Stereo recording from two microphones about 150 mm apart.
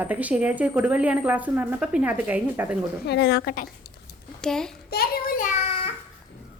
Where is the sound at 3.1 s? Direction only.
90° left.